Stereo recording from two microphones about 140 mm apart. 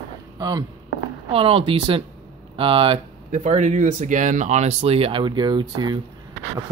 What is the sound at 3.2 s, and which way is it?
Speech, 55° right (ahead or behind).